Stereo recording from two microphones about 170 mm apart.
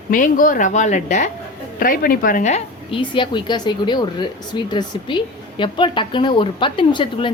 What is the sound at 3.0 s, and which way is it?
A woman's voice, 30° left (ahead or behind).